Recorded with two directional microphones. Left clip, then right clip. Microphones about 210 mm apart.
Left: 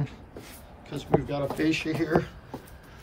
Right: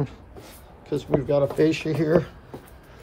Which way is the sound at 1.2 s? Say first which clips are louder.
Right 7 dB; 30° right (ahead or behind).